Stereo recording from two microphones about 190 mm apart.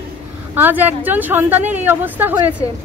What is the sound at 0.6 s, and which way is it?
Speech, 10° right (ahead or behind).